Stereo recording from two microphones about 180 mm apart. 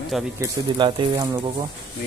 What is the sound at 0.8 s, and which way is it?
Speech, 25° right (ahead or behind).